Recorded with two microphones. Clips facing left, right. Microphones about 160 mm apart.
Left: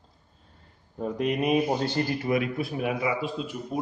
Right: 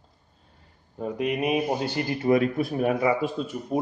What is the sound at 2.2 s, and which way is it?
Speech, 35° right (ahead or behind).